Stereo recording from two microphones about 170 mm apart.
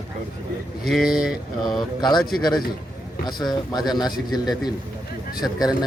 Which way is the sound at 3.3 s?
25° left (ahead or behind).